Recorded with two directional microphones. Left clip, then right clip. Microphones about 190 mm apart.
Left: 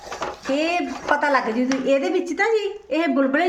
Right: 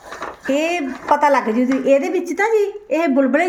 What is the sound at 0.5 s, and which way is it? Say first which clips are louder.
A woman's voice: right 2 dB; 50° right (ahead or behind).